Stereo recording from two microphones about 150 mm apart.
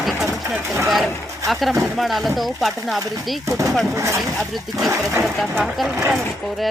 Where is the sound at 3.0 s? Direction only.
20° right (ahead or behind).